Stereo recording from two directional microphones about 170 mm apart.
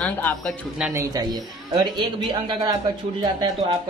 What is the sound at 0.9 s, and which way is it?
Speech, 25° right (ahead or behind).